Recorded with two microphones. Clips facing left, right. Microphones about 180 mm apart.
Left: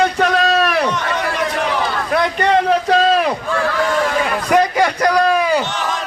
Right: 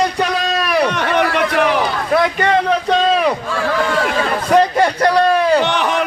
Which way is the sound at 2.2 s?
Centre (ahead or behind).